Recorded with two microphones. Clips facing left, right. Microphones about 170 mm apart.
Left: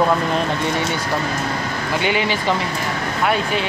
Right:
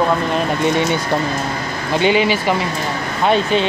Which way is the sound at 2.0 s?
20° right (ahead or behind).